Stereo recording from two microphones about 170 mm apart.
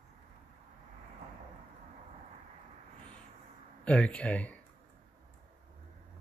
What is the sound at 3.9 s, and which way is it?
Speech, 5° left (ahead or behind).